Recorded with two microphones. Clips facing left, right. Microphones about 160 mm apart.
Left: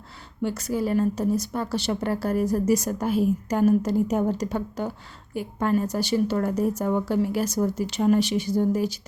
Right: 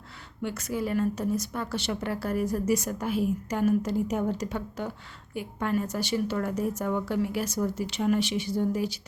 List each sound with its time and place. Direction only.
0.4 s a woman's voice: 35° left (ahead or behind)